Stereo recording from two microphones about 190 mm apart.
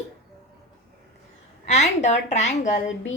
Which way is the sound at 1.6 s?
35° left (ahead or behind).